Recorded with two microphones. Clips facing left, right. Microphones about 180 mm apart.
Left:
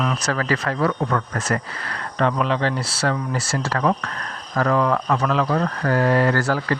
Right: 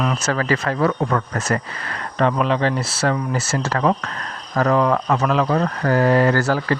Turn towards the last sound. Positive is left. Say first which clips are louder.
# right 2 dB
turn(degrees=-25)  # may be behind; listen again after turning